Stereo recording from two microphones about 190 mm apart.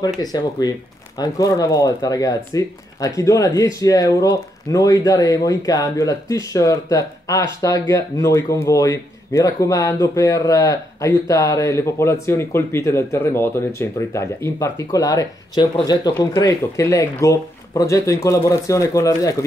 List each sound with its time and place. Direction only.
0.2 s speech: 20° left (ahead or behind)